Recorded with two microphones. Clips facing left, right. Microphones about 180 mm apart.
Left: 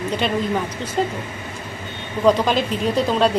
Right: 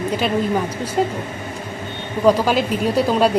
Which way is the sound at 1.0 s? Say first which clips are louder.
Right 2 dB; 5° right (ahead or behind).